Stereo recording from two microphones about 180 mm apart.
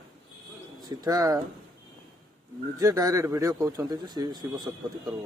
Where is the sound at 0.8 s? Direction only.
20° right (ahead or behind).